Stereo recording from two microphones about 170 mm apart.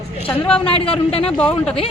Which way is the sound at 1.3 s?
5° left (ahead or behind).